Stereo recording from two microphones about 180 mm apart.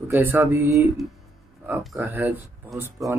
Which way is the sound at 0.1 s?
15° right (ahead or behind).